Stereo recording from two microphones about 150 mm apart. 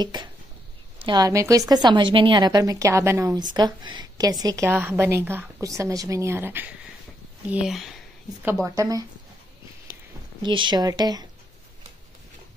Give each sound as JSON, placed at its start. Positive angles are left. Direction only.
{"t": 0.0, "sound": "a woman's voice", "side_deg": -30}
{"t": 8.6, "sound": "a woman's voice", "side_deg": -20}
{"t": 10.4, "sound": "a woman's voice", "side_deg": -30}